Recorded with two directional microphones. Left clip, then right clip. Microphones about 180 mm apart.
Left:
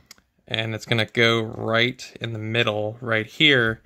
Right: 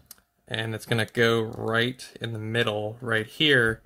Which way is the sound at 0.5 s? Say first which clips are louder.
Left 4 dB; 20° left (ahead or behind).